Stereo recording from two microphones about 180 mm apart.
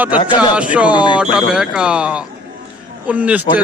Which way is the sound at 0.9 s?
25° left (ahead or behind).